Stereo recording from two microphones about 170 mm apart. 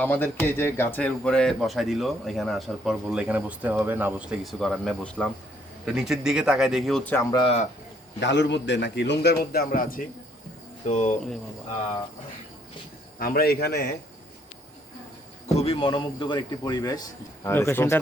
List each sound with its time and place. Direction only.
0.0 s speech: 10° left (ahead or behind); by 4.4 s 10° right (ahead or behind)
4.6 s speech: 5° left (ahead or behind)
7.3 s a man's voice: 25° left (ahead or behind)
8.2 s a man's voice: 90° left; by 10.0 s 60° left (ahead or behind)
10.8 s speech: 45° left (ahead or behind)
13.1 s a man's voice: 60° left (ahead or behind)
15.5 s a man's voice: 35° left (ahead or behind); by 18.0 s 15° left (ahead or behind)